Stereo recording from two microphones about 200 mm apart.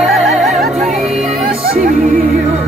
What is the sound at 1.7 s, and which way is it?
Music, 40° right (ahead or behind).